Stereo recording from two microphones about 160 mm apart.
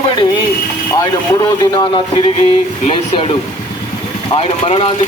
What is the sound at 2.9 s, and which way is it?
Speech, 35° left (ahead or behind).